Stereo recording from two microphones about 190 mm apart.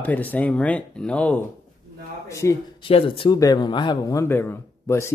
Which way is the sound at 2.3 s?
15° left (ahead or behind).